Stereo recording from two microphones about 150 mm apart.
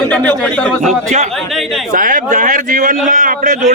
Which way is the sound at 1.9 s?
60° right (ahead or behind).